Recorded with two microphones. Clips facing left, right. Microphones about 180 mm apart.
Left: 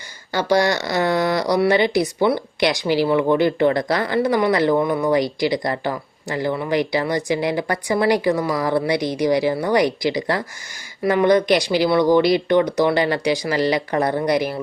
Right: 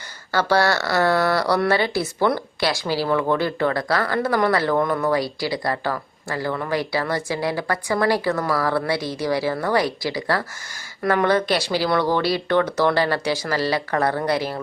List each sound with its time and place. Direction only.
0.3 s speech: 15° left (ahead or behind)